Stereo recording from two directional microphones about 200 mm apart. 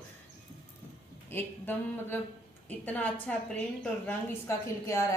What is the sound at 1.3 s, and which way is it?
Speech, 10° left (ahead or behind).